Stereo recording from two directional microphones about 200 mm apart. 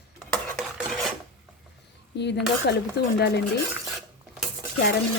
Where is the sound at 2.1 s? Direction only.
60° left (ahead or behind).